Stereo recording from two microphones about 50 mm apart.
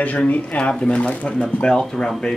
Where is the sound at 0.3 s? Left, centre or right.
Left.